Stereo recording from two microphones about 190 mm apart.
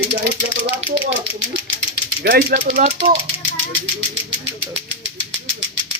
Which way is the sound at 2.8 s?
35° right (ahead or behind).